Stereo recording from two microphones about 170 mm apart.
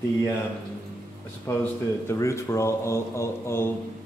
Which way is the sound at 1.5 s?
15° left (ahead or behind).